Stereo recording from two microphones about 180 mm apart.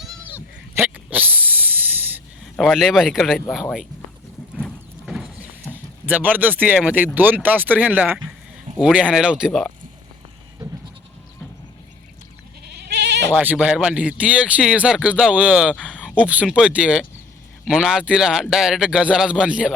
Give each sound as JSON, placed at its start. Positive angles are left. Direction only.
{"t": 0.3, "sound": "a sound", "side_deg": -10}
{"t": 2.6, "sound": "speech", "side_deg": 0}
{"t": 4.5, "sound": "clip-clop", "side_deg": 5}
{"t": 8.8, "sound": "speech", "side_deg": -5}
{"t": 12.9, "sound": "bleat", "side_deg": -70}
{"t": 13.3, "sound": "speech", "side_deg": -10}